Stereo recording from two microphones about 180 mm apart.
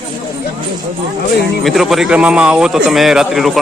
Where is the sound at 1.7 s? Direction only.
Centre (ahead or behind).